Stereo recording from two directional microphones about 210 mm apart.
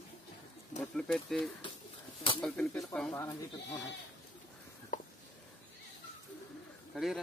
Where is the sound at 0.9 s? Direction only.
5° left (ahead or behind).